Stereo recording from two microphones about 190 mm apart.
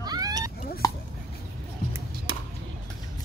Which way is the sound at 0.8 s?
20° left (ahead or behind).